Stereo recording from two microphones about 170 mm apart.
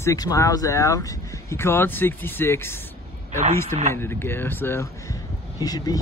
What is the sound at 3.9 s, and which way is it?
Speech, 15° left (ahead or behind).